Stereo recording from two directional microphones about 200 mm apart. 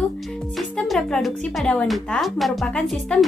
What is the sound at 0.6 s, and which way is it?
Speech, centre (ahead or behind).